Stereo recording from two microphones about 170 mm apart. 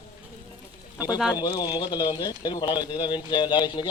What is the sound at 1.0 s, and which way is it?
Speech, 5° right (ahead or behind).